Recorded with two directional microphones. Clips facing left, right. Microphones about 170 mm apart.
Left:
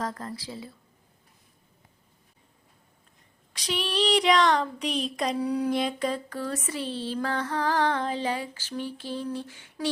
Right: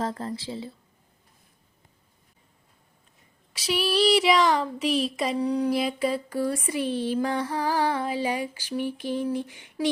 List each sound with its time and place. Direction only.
0.0 s speech: 25° right (ahead or behind)
3.5 s speech: 5° right (ahead or behind)
6.7 s a sound: 15° right (ahead or behind)